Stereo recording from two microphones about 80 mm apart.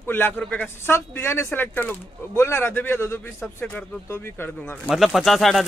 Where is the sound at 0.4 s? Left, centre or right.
Centre.